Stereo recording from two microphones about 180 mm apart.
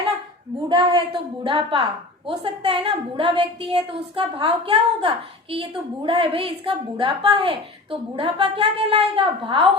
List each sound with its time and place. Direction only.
0.7 s a woman's voice: 25° right (ahead or behind)